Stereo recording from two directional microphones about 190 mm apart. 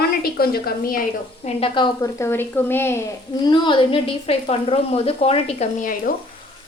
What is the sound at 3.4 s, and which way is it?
Speech, 25° left (ahead or behind).